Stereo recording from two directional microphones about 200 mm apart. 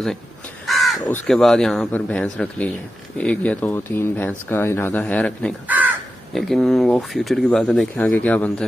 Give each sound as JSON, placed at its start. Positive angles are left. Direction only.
{"t": 0.7, "sound": "crow", "side_deg": 0}
{"t": 0.9, "sound": "speech", "side_deg": 15}
{"t": 1.2, "sound": "speech", "side_deg": 0}